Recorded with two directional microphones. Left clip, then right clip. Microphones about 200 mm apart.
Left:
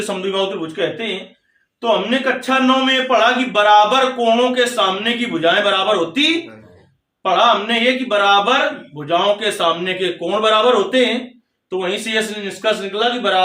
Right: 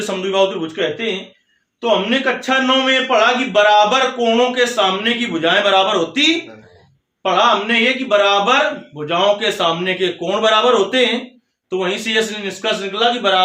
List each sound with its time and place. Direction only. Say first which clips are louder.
0.2 s a man's voice: right 7 dB; 25° right (ahead or behind)